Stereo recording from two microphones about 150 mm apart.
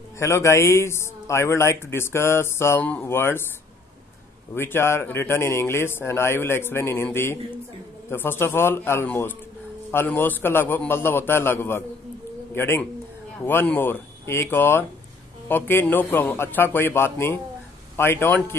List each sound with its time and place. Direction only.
0.2 s a man's voice: 20° left (ahead or behind)
4.6 s a man's voice: 15° left (ahead or behind)